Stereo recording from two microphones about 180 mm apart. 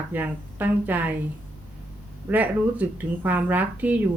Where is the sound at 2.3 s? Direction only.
10° right (ahead or behind).